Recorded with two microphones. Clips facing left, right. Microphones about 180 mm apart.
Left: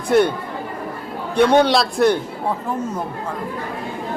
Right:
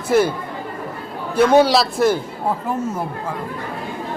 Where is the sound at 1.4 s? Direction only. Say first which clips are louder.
Right 1 dB; 5° right (ahead or behind).